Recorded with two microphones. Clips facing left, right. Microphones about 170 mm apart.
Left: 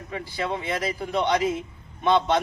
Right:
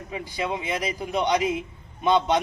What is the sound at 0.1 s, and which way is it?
A man's voice, 15° right (ahead or behind).